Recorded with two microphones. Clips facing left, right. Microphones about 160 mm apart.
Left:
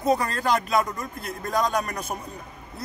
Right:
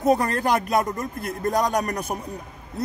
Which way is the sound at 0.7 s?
45° right (ahead or behind).